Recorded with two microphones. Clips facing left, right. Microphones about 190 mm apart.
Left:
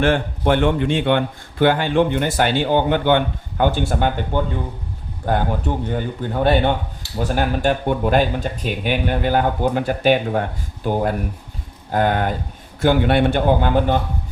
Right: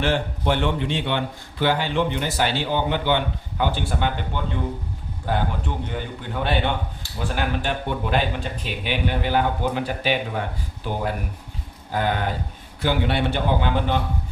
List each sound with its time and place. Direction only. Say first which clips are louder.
0.0 s a man's voice: left 5 dB; 55° left (ahead or behind)